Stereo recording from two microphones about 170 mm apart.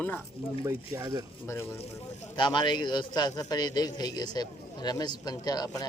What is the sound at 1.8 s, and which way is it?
Speech, 30° left (ahead or behind).